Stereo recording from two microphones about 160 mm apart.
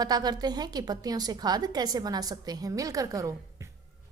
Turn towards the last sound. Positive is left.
turn(degrees=-20)  # may be behind; listen again after turning